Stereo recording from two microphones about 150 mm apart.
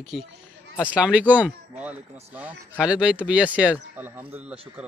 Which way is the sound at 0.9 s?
10° right (ahead or behind).